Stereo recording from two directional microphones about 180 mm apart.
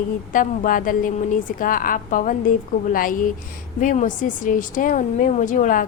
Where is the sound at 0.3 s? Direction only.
50° left (ahead or behind).